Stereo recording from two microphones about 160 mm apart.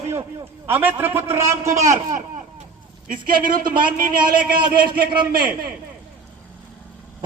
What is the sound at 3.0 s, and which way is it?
Speech, 60° right (ahead or behind).